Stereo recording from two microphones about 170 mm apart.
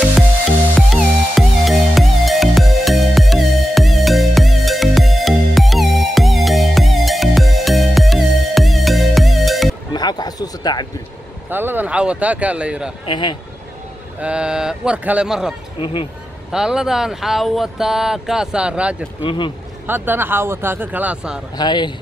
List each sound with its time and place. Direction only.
0.8 s music: centre (ahead or behind)
9.9 s basketball bounce: 25° left (ahead or behind)
11.5 s speech: 10° right (ahead or behind)
13.0 s speech: 25° left (ahead or behind)
14.2 s speech: 5° right (ahead or behind)
15.8 s speech: 30° left (ahead or behind)
16.5 s speech: 5° right (ahead or behind)
19.2 s speech: 30° left (ahead or behind)
19.9 s speech: 10° right (ahead or behind)
21.5 s speech: 25° left (ahead or behind)